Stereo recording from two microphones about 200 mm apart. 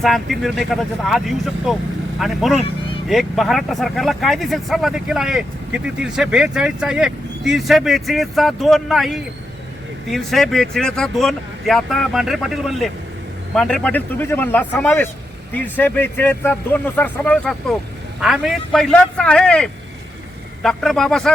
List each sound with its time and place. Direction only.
0.0 s speech: centre (ahead or behind)
2.6 s vehicle: 25° left (ahead or behind)
3.1 s a man's voice: centre (ahead or behind)